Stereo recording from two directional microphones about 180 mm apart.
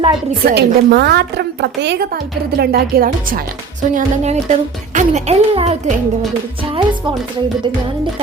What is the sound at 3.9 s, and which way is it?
Speech, 40° right (ahead or behind).